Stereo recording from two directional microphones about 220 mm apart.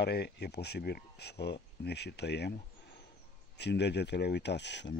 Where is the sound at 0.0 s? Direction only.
50° left (ahead or behind).